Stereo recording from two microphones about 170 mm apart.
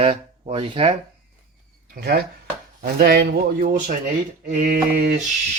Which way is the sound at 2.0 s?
65° right (ahead or behind).